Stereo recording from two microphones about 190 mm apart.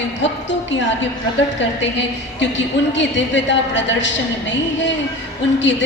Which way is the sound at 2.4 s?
70° left (ahead or behind).